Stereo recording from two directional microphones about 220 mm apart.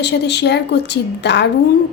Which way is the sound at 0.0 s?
50° left (ahead or behind).